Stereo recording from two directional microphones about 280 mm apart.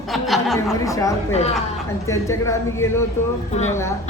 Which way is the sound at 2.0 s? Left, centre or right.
Centre.